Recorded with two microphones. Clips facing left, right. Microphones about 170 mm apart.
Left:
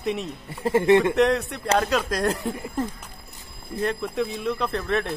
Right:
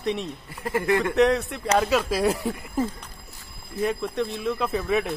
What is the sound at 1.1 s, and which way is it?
Speech, centre (ahead or behind).